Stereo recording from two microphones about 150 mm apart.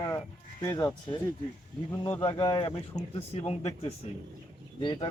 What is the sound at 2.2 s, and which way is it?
Speech, 30° left (ahead or behind).